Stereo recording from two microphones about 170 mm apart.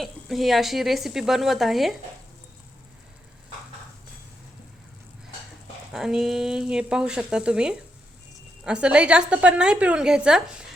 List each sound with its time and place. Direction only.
0.0 s speech: centre (ahead or behind)
5.9 s speech: centre (ahead or behind)